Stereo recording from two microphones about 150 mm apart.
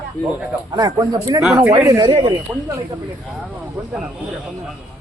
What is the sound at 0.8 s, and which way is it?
A man's voice, 25° right (ahead or behind).